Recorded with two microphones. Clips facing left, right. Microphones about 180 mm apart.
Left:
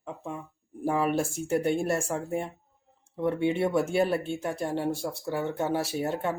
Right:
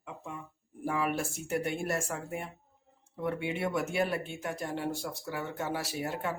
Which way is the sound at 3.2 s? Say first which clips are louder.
Left 7 dB; 25° left (ahead or behind).